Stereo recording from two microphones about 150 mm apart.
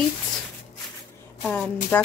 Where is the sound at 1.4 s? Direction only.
5° left (ahead or behind).